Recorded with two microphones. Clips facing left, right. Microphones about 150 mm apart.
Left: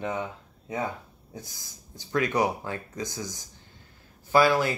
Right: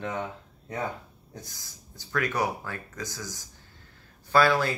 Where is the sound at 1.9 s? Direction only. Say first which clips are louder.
Left 3 dB; 20° left (ahead or behind).